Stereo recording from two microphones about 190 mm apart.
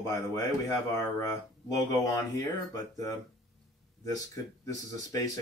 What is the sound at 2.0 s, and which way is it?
Speech, 20° left (ahead or behind).